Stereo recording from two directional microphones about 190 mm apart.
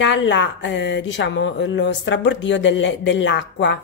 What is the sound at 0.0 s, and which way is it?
Speech, 75° left (ahead or behind).